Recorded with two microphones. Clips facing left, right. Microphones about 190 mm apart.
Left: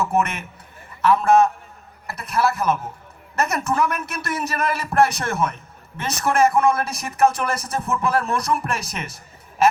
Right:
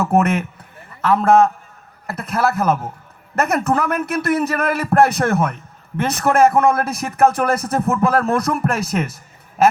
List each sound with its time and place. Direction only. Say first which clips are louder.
0.0 s a man's voice: right 6 dB; 55° right (ahead or behind)